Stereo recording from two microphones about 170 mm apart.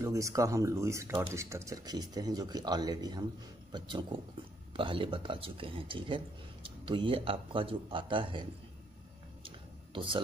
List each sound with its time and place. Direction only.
0.0 s speech: 20° right (ahead or behind)
9.9 s speech: 30° right (ahead or behind)